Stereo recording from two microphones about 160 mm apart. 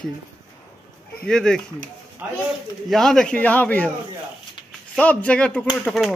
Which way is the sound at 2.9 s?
5° left (ahead or behind).